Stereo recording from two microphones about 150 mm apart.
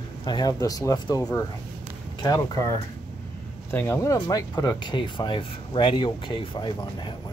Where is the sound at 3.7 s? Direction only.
20° left (ahead or behind).